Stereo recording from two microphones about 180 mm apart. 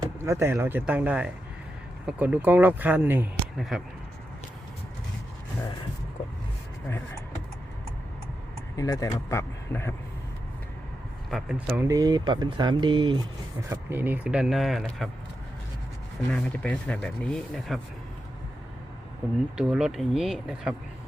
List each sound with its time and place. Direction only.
0.0 s speech: 15° right (ahead or behind)
3.3 s a sound: centre (ahead or behind)
8.7 s speech: 20° left (ahead or behind)
11.3 s speech: centre (ahead or behind)
11.8 s speech: 20° right (ahead or behind)
13.7 s speech: 10° right (ahead or behind)
16.3 s speech: 5° left (ahead or behind)
19.5 s speech: 5° right (ahead or behind)